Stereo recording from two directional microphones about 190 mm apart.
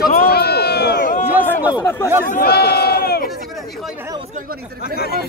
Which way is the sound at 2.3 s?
55° left (ahead or behind).